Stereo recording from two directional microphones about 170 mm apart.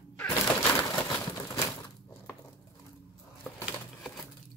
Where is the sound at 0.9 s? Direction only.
15° left (ahead or behind).